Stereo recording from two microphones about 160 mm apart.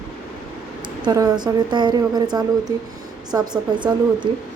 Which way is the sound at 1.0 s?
25° right (ahead or behind).